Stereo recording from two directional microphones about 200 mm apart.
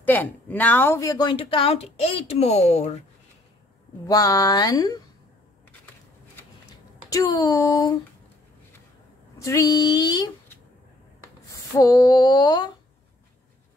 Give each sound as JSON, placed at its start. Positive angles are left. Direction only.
{"t": 0.0, "sound": "speech", "side_deg": 10}
{"t": 4.1, "sound": "speech", "side_deg": 20}
{"t": 7.1, "sound": "a sound", "side_deg": 20}
{"t": 9.4, "sound": "speech", "side_deg": 15}
{"t": 11.5, "sound": "speech", "side_deg": 15}